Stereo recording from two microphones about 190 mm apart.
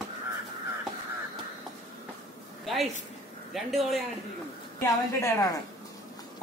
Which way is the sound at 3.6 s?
Centre (ahead or behind).